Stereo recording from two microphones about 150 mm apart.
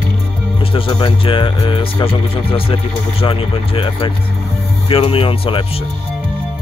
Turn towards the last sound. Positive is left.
turn(degrees=35)  # may be behind; listen again after turning